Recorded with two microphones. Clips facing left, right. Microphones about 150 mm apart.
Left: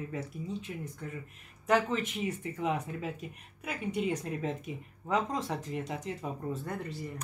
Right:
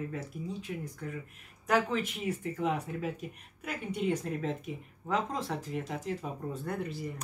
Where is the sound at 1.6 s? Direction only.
5° right (ahead or behind).